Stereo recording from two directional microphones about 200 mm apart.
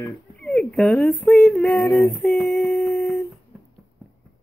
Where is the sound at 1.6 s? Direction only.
15° left (ahead or behind).